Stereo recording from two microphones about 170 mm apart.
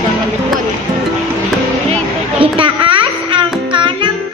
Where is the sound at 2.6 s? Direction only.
30° right (ahead or behind).